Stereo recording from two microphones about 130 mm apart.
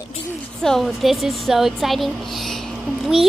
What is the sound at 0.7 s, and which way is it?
A child's voice, centre (ahead or behind).